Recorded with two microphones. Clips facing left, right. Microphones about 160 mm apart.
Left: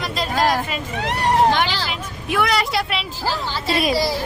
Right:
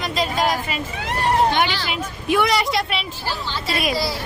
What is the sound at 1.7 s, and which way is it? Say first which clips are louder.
Speech: even; 40° left (ahead or behind).